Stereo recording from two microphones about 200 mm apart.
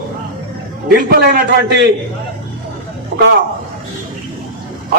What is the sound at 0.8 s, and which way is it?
Speech, 50° right (ahead or behind).